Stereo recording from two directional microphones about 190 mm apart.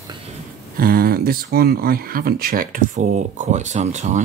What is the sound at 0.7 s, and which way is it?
Speech, 50° right (ahead or behind).